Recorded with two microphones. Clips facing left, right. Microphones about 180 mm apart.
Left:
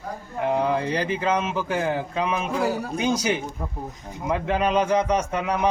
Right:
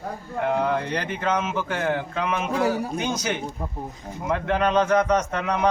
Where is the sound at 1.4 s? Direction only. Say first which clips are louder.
Even; 30° left (ahead or behind).